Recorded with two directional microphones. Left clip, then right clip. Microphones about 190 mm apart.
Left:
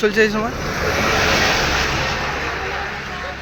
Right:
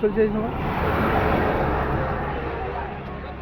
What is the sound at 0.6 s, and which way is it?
Speech, 30° right (ahead or behind).